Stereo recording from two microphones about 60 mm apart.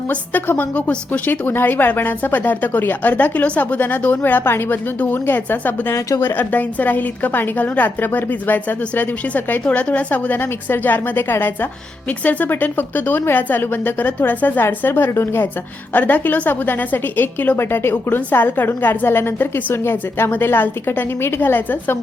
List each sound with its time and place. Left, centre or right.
0.1 s a woman's voice: left
5.9 s speech: left
6.2 s a woman's voice: left
12.2 s a woman's voice: left
15.9 s a woman's voice: left
17.6 s a woman's voice: left